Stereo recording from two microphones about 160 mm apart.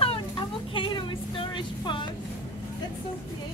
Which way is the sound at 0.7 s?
30° left (ahead or behind).